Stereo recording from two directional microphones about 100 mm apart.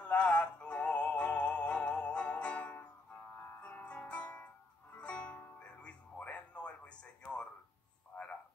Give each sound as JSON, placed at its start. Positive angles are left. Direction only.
{"t": 0.0, "sound": "synthetic singing", "side_deg": 10}
{"t": 3.6, "sound": "music", "side_deg": 15}
{"t": 8.1, "sound": "a sound", "side_deg": 20}